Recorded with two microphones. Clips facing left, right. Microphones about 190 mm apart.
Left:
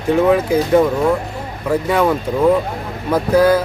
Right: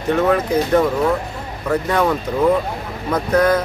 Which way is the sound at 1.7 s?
5° left (ahead or behind).